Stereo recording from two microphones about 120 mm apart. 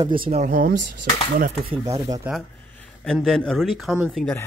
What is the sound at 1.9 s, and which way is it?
Speech, 30° right (ahead or behind).